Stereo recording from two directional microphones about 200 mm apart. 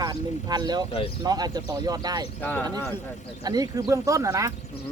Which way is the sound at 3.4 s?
20° right (ahead or behind).